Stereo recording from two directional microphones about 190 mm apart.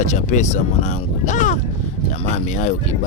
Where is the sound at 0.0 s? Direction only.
40° left (ahead or behind).